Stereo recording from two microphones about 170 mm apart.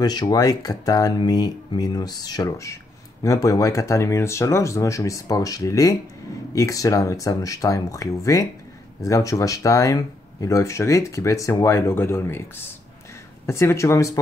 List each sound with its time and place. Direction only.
0.0 s speech: 25° left (ahead or behind)
13.5 s speech: 15° left (ahead or behind)